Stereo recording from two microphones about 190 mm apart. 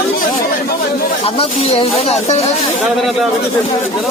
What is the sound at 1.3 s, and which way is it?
Speech, 30° left (ahead or behind).